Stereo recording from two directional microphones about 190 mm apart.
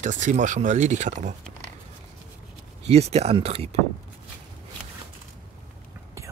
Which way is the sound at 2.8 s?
35° right (ahead or behind).